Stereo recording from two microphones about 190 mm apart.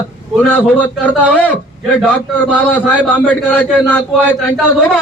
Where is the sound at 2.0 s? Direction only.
5° left (ahead or behind).